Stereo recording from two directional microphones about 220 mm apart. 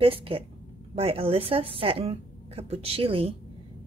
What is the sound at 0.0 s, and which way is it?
A woman's voice, 25° right (ahead or behind).